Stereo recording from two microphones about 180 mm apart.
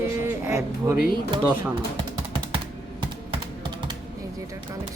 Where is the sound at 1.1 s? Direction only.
25° right (ahead or behind).